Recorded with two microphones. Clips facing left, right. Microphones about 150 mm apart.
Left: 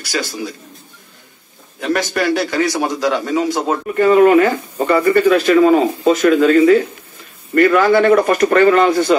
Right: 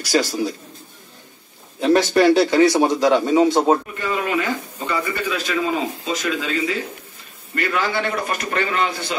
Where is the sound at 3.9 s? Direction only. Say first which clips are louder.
Left 13 dB; 55° left (ahead or behind).